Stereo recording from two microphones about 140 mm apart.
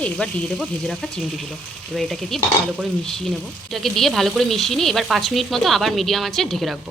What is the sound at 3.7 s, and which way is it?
Speech, centre (ahead or behind).